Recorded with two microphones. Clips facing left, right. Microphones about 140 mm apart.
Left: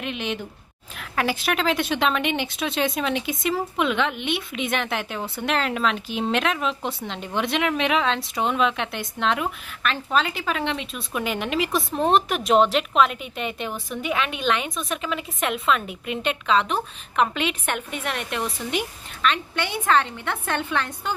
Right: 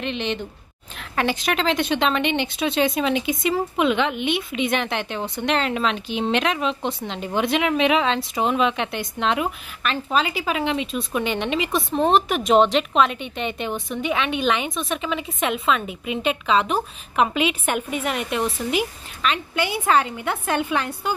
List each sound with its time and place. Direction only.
0.0 s a woman's voice: 5° left (ahead or behind); by 21.1 s 10° right (ahead or behind)